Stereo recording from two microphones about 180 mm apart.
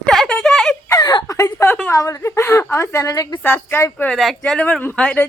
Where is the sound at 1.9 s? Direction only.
20° left (ahead or behind).